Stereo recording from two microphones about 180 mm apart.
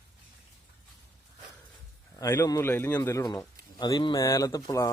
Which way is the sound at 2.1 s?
15° left (ahead or behind).